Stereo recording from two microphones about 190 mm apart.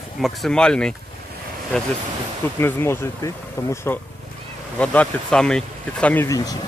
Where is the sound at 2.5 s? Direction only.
15° left (ahead or behind).